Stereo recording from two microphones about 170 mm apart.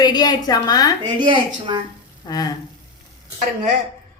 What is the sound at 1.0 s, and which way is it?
Dishes, 30° right (ahead or behind).